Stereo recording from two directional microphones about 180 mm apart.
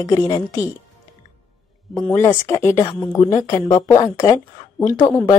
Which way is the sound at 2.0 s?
10° left (ahead or behind).